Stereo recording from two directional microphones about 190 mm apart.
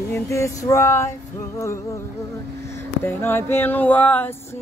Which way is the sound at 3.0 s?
10° left (ahead or behind).